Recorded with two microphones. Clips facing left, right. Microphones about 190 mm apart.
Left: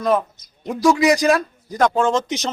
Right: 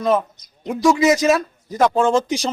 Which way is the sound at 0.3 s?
15° right (ahead or behind).